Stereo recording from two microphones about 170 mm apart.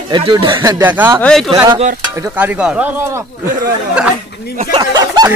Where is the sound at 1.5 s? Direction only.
20° right (ahead or behind).